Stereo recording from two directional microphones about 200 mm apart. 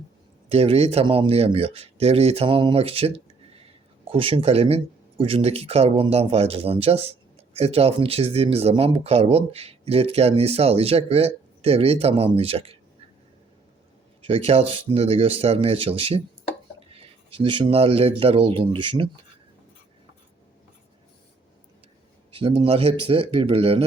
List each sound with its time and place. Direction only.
0.4 s speech: 30° right (ahead or behind)
14.2 s speech: 30° right (ahead or behind)
22.3 s speech: 25° right (ahead or behind)